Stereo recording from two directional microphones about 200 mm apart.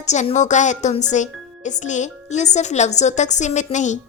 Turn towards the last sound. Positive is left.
turn(degrees=35)  # may be behind; listen again after turning